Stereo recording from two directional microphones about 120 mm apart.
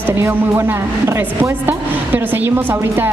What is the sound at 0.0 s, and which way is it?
A woman's voice, 20° right (ahead or behind).